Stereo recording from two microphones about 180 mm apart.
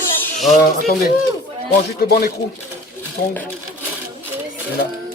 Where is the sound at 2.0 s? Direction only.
60° left (ahead or behind).